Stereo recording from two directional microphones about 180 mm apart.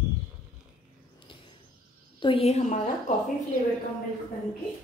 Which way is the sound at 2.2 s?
30° left (ahead or behind).